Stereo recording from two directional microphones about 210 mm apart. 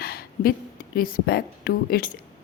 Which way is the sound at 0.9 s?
45° left (ahead or behind).